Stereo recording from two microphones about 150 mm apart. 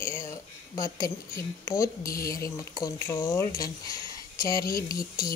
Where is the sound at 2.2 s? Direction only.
20° left (ahead or behind).